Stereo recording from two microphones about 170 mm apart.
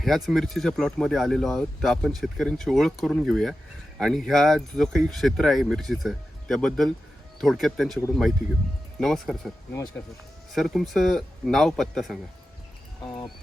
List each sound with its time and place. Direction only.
0.0 s speech: centre (ahead or behind)
9.7 s speech: 15° left (ahead or behind)
10.5 s speech: centre (ahead or behind)